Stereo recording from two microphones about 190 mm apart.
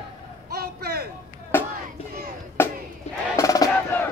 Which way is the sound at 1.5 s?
10° left (ahead or behind).